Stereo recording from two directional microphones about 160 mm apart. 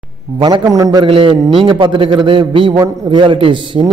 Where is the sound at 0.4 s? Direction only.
25° right (ahead or behind).